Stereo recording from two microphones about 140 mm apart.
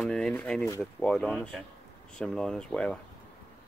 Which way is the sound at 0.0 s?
5° left (ahead or behind).